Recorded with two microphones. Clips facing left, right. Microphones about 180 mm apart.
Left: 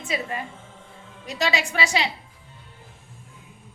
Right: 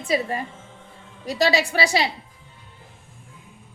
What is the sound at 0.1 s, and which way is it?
Speech, 35° right (ahead or behind).